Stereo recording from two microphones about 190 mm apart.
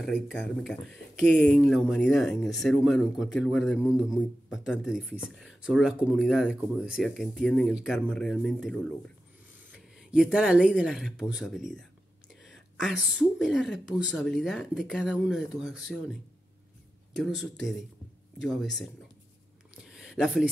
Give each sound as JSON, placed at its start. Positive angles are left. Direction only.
{"t": 0.7, "sound": "speech", "side_deg": 0}
{"t": 17.4, "sound": "speech", "side_deg": 0}
{"t": 19.7, "sound": "a sound", "side_deg": 0}